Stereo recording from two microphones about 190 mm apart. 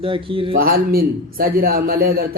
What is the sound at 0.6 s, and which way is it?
A man's voice, 50° right (ahead or behind).